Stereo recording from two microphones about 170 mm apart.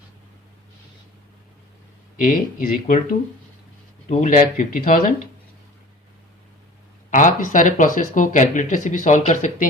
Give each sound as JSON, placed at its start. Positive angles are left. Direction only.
{"t": 2.1, "sound": "speech", "side_deg": 50}
{"t": 7.1, "sound": "speech", "side_deg": 50}